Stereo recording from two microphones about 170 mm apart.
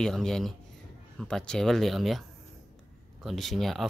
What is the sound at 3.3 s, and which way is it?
Speech, centre (ahead or behind).